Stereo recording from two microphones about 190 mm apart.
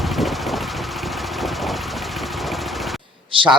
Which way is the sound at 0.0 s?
Centre (ahead or behind).